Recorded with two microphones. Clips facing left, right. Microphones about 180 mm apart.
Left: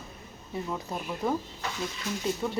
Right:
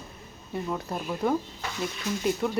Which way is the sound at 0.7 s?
Centre (ahead or behind).